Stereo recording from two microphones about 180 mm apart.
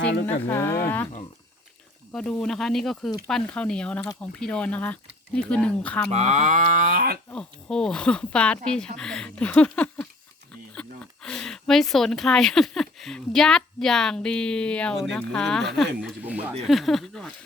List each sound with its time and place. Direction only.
0.0 s speech: 70° left (ahead or behind)
0.4 s speech: 10° left (ahead or behind)
2.1 s speech: 5° left (ahead or behind)
6.1 s speech: 35° right (ahead or behind); by 7.2 s 55° right (ahead or behind)
7.3 s speech: 5° left (ahead or behind)